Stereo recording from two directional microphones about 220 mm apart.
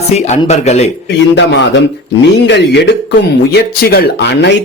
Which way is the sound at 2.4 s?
50° left (ahead or behind).